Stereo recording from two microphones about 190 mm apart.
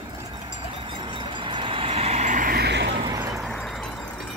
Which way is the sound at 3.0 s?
20° right (ahead or behind).